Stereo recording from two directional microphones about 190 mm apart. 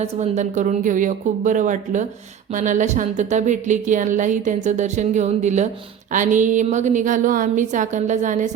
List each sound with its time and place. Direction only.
0.0 s a woman's voice: 40° right (ahead or behind)